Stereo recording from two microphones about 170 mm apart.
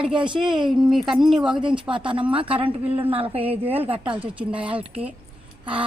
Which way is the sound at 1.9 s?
30° right (ahead or behind).